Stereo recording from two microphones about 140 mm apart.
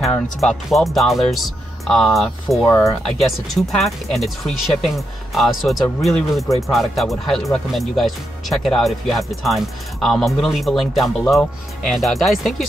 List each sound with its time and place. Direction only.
0.4 s speech: centre (ahead or behind)
2.7 s speech: 20° left (ahead or behind)
3.2 s speech: centre (ahead or behind)